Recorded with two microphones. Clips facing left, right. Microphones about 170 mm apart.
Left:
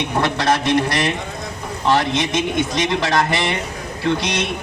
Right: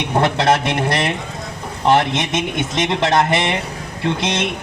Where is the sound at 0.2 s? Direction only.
25° right (ahead or behind).